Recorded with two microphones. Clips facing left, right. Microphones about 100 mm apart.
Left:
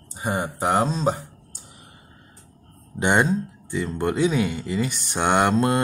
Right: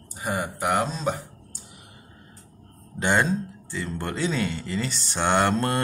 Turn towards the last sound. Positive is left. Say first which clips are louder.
# left 3 dB
turn(degrees=15)  # may be behind; listen again after turning